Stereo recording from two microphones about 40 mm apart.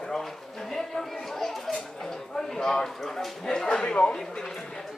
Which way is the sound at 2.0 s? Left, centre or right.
Centre.